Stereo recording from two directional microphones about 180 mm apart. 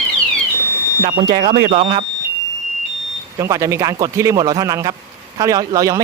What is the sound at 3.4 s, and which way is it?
A man's voice, 15° right (ahead or behind).